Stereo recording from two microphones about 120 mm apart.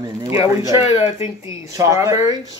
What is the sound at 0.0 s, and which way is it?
Speech, 30° right (ahead or behind).